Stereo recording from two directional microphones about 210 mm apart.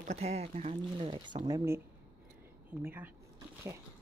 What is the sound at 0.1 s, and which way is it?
Speech, 30° right (ahead or behind).